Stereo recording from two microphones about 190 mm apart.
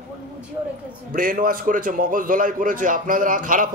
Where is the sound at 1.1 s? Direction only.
45° right (ahead or behind).